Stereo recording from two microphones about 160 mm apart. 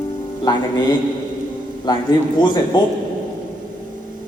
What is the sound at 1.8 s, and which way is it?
A man's voice, 25° left (ahead or behind).